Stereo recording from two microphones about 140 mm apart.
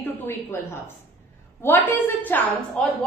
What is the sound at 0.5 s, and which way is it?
A woman's voice, 15° left (ahead or behind).